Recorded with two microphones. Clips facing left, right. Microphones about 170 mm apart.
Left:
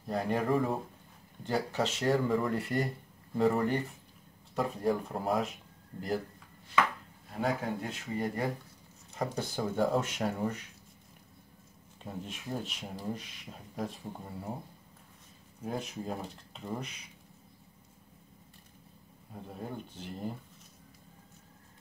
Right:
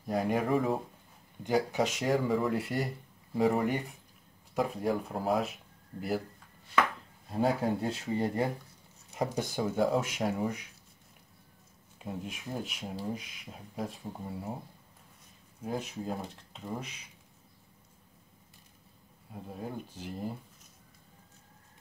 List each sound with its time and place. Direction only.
0.0 s speech: 10° right (ahead or behind)
1.4 s speech: 15° right (ahead or behind)
7.3 s speech: 30° right (ahead or behind); by 10.6 s 5° right (ahead or behind)
12.0 s speech: 10° right (ahead or behind)
15.6 s speech: centre (ahead or behind)
19.3 s speech: 5° right (ahead or behind)